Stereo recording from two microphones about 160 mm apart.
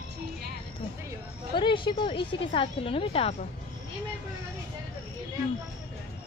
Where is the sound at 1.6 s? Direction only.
30° left (ahead or behind).